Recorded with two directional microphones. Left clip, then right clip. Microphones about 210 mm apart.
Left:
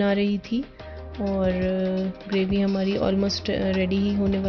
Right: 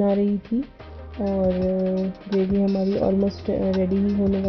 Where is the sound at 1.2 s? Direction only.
20° left (ahead or behind).